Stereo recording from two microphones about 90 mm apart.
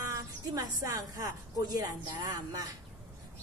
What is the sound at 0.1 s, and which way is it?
A woman's voice, 40° right (ahead or behind).